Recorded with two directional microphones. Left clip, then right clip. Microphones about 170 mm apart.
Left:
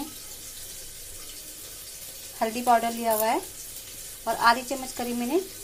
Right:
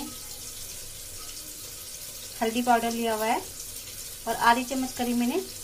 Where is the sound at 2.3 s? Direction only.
15° left (ahead or behind).